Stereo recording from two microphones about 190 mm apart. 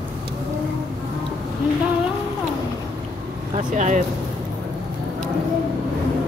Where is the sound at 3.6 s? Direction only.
40° right (ahead or behind).